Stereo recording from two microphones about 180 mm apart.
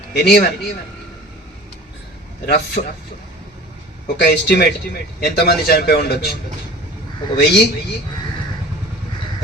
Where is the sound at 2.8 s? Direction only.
40° left (ahead or behind).